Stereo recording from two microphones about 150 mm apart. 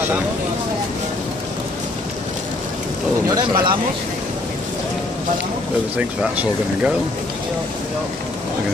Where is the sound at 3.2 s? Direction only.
25° right (ahead or behind).